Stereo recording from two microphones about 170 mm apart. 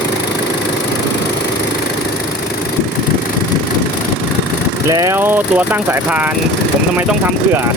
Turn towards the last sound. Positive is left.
turn(degrees=-10)  # may be behind; listen again after turning